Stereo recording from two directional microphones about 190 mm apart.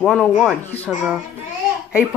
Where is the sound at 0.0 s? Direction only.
5° left (ahead or behind).